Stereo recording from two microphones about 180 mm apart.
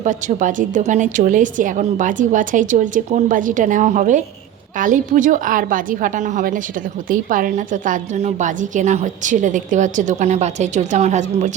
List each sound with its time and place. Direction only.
0.0 s a woman's voice: 45° right (ahead or behind)